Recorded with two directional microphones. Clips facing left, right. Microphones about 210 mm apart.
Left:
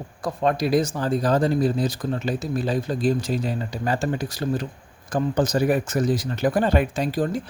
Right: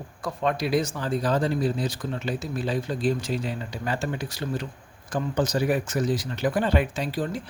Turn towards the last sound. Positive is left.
turn(degrees=45)  # may be behind; listen again after turning